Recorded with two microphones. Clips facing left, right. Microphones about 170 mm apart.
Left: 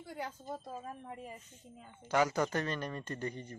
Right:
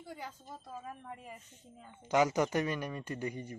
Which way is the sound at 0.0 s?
65° left (ahead or behind).